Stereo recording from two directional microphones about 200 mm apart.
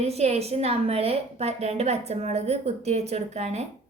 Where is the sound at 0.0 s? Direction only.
30° right (ahead or behind).